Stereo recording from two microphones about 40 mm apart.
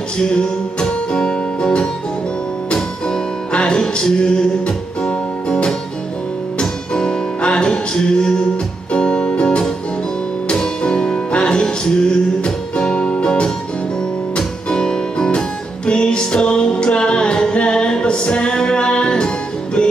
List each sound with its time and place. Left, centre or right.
0.2 s music: left